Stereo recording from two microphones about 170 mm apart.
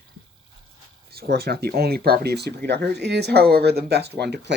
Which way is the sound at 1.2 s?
65° right (ahead or behind).